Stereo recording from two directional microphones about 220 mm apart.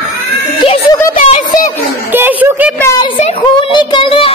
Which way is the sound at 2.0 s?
10° right (ahead or behind).